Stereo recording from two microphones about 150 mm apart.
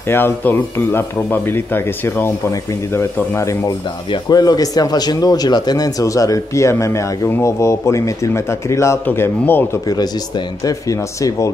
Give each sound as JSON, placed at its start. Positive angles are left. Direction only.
{"t": 0.1, "sound": "speech", "side_deg": 15}
{"t": 9.8, "sound": "speech", "side_deg": 25}